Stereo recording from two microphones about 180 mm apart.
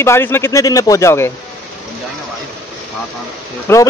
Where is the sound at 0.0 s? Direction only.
15° left (ahead or behind).